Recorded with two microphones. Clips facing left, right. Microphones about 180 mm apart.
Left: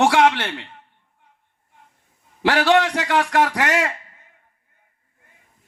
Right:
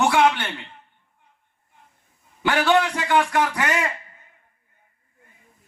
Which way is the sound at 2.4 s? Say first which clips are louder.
Left 2 dB; 85° left.